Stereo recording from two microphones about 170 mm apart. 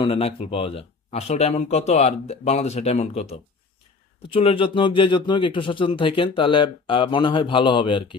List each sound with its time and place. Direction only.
0.0 s speech: 35° left (ahead or behind)